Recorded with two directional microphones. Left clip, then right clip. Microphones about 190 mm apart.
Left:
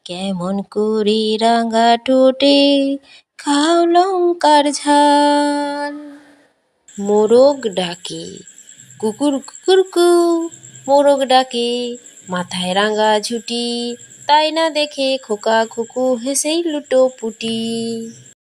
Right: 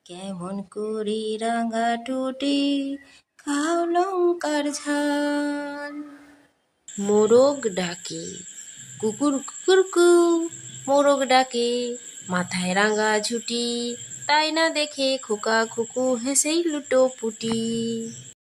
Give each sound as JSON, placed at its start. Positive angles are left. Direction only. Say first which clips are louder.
{"t": 0.0, "sound": "a sound", "louder": "left 12 dB", "side_deg": 30}
{"t": 3.3, "sound": "music", "louder": "left 10 dB", "side_deg": 25}
{"t": 4.1, "sound": "speech", "louder": "left 6 dB", "side_deg": 15}
{"t": 4.4, "sound": "music", "louder": "left 13 dB", "side_deg": 25}
{"t": 7.2, "sound": "music", "louder": "left 6 dB", "side_deg": 20}
{"t": 9.0, "sound": "speech", "louder": "left 6 dB", "side_deg": 15}